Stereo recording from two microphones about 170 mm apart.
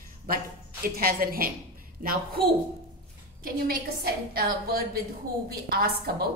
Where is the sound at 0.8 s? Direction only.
60° right (ahead or behind).